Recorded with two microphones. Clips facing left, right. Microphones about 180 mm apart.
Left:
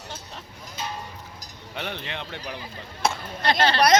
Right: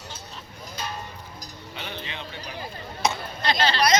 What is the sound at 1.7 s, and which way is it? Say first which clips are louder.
A man's voice: left 4 dB; 65° left (ahead or behind).